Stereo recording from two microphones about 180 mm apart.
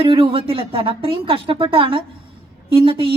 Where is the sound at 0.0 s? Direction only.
30° right (ahead or behind).